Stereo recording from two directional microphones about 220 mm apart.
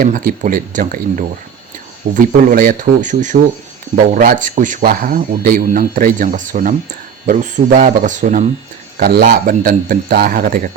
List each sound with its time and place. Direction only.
0.0 s a man's voice: 35° right (ahead or behind)